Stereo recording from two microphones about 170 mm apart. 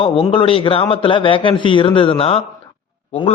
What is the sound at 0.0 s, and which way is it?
A man's voice, 30° left (ahead or behind).